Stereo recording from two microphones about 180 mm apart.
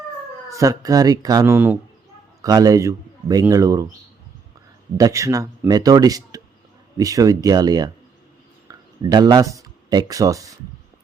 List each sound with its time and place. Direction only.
0.5 s a man's voice: 20° right (ahead or behind)
4.9 s speech: 20° right (ahead or behind)